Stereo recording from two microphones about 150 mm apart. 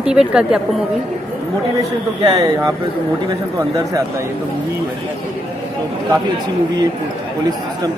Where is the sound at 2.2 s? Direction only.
25° right (ahead or behind).